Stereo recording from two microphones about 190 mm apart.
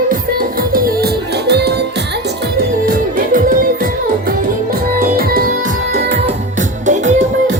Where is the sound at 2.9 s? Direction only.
45° right (ahead or behind).